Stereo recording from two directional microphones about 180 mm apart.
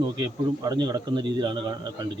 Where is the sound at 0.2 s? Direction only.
25° right (ahead or behind).